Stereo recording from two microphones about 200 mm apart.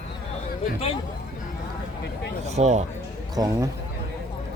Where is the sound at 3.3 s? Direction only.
20° right (ahead or behind).